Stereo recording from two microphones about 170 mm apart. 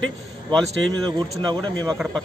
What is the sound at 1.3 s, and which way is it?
Speech, 25° right (ahead or behind).